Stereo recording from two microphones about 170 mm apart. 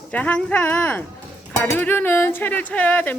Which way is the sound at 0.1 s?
10° left (ahead or behind).